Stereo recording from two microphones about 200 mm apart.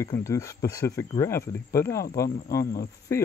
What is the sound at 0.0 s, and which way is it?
Speech, 15° left (ahead or behind).